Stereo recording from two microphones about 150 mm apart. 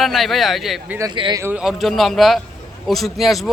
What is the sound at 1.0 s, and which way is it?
Speech, 30° right (ahead or behind).